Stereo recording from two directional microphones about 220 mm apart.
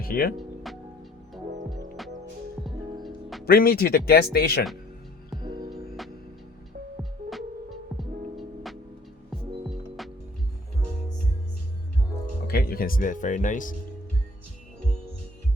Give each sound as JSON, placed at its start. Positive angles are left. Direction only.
{"t": 0.0, "sound": "speech", "side_deg": 45}
{"t": 0.3, "sound": "music", "side_deg": 0}
{"t": 3.4, "sound": "speech", "side_deg": 45}
{"t": 5.4, "sound": "music", "side_deg": -20}
{"t": 7.0, "sound": "music", "side_deg": 0}
{"t": 12.5, "sound": "speech", "side_deg": 45}